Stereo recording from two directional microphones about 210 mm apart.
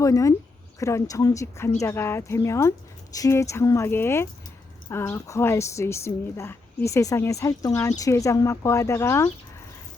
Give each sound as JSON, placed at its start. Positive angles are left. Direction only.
{"t": 0.0, "sound": "a woman's voice", "side_deg": 15}